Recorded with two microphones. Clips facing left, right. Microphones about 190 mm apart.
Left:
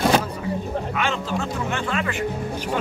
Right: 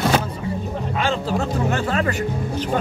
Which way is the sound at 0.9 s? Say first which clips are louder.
Right 6 dB; 35° right (ahead or behind).